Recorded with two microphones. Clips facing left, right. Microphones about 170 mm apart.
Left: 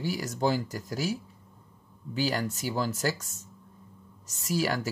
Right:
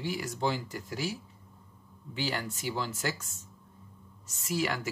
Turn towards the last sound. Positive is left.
turn(degrees=40)  # may be behind; listen again after turning